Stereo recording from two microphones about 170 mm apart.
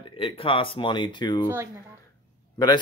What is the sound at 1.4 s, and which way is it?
Speech, 15° right (ahead or behind).